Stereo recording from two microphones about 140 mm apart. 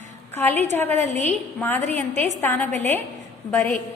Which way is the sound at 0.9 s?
50° right (ahead or behind).